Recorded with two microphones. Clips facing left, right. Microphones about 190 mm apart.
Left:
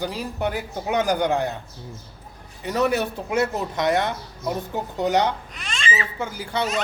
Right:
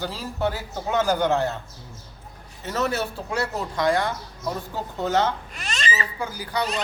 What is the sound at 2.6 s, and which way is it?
Speech, 15° left (ahead or behind).